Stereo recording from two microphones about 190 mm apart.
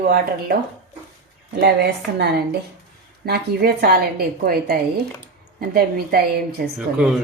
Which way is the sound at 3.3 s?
55° right (ahead or behind).